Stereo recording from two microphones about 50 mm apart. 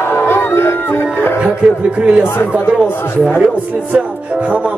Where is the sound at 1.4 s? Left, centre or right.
Right.